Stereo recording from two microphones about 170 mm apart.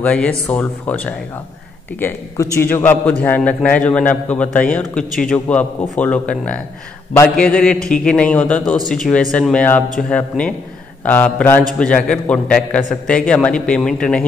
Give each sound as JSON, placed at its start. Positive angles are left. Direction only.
{"t": 0.0, "sound": "a man's voice", "side_deg": 5}